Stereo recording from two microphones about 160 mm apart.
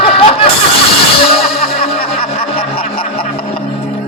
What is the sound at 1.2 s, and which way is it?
Music, 35° left (ahead or behind).